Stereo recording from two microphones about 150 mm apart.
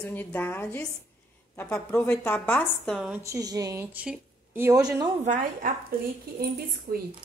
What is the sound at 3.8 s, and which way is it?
Speech, 10° right (ahead or behind).